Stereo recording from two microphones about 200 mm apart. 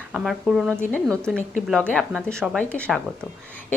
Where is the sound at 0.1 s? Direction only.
Centre (ahead or behind).